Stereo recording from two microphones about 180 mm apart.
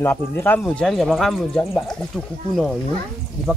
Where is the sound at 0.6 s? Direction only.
Centre (ahead or behind).